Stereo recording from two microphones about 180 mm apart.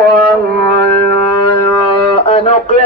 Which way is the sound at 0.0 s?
65° right (ahead or behind).